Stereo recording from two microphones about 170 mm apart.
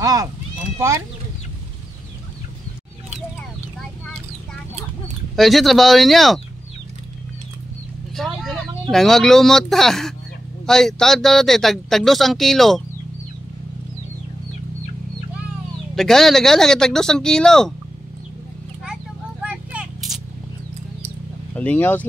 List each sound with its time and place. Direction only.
0.0 s speech: 20° right (ahead or behind)
5.3 s speech: centre (ahead or behind)
8.2 s vehicle: centre (ahead or behind)
8.9 s speech: centre (ahead or behind)
15.9 s speech: centre (ahead or behind)
19.4 s a sound: 5° right (ahead or behind)
21.5 s speech: 10° left (ahead or behind)